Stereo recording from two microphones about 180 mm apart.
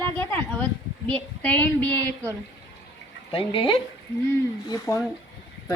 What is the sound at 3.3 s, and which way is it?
Speech, 30° left (ahead or behind).